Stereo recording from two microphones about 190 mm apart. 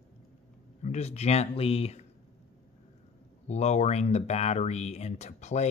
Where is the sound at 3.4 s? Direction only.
35° left (ahead or behind).